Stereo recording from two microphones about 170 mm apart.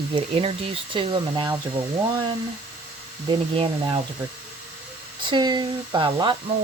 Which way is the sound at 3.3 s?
30° right (ahead or behind).